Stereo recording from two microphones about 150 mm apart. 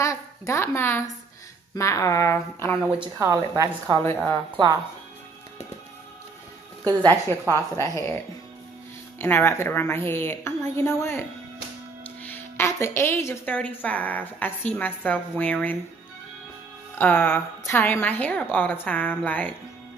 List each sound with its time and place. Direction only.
0.0 s a woman's voice: 20° left (ahead or behind)
3.2 s a woman's voice: 20° right (ahead or behind)
6.8 s a woman's voice: 25° right (ahead or behind)
7.4 s a woman's voice: 20° left (ahead or behind)
9.2 s a woman's voice: 15° left (ahead or behind)
17.0 s a woman's voice: 15° left (ahead or behind)